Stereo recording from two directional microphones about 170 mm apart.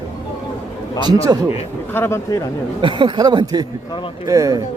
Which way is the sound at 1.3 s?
20° right (ahead or behind).